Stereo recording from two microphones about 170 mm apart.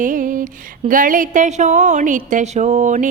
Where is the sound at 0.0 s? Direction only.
50° right (ahead or behind).